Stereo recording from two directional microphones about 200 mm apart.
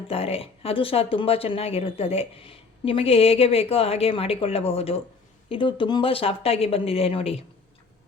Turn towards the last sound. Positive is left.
turn(degrees=30)  # may be behind; listen again after turning